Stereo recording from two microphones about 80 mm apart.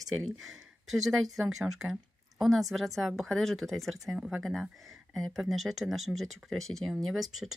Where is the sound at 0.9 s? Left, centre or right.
Centre.